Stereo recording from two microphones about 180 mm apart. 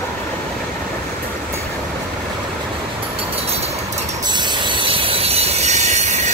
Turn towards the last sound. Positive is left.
turn(degrees=-40)  # may be behind; listen again after turning